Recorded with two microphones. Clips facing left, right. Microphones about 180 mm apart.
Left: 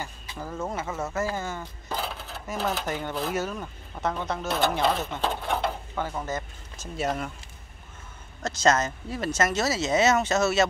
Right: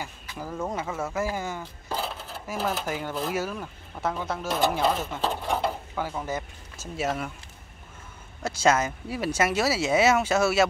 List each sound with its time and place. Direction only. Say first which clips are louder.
0.7 s speech: right 1 dB; 10° right (ahead or behind)
8.4 s speech: even; 10° right (ahead or behind)